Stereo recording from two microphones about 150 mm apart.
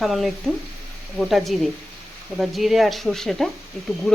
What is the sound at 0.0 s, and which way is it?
Speech, centre (ahead or behind).